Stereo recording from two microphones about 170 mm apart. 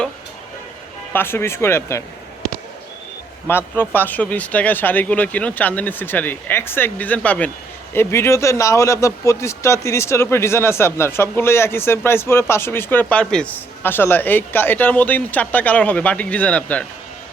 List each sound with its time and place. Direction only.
1.1 s a man's voice: 15° left (ahead or behind)
3.4 s a man's voice: 15° left (ahead or behind)